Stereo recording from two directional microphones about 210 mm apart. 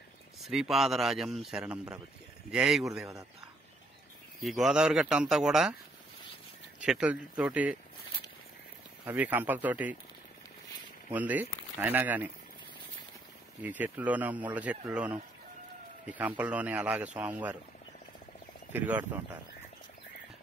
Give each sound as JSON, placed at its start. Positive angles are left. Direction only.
{"t": 0.4, "sound": "a man's voice", "side_deg": 0}
{"t": 4.4, "sound": "a man's voice", "side_deg": 0}
{"t": 6.8, "sound": "a man's voice", "side_deg": -5}
{"t": 9.0, "sound": "speech", "side_deg": -10}
{"t": 11.1, "sound": "speech", "side_deg": -10}
{"t": 13.6, "sound": "speech", "side_deg": -10}
{"t": 16.1, "sound": "speech", "side_deg": -5}
{"t": 18.7, "sound": "speech", "side_deg": -10}